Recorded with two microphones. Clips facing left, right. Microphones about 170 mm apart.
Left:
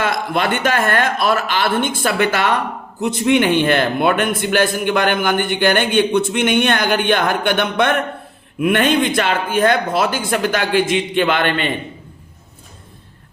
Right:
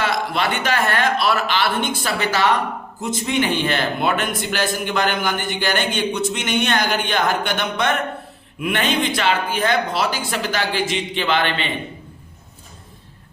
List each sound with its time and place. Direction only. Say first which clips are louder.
0.0 s a man's voice: left 2 dB; 50° left (ahead or behind)